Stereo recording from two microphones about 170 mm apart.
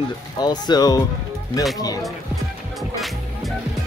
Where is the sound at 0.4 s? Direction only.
25° left (ahead or behind).